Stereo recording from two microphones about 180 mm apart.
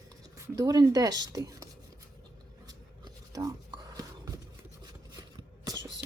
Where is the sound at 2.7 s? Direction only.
20° right (ahead or behind).